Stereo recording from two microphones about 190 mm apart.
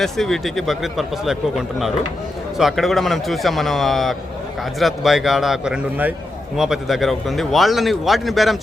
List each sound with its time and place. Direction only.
0.0 s speech: centre (ahead or behind)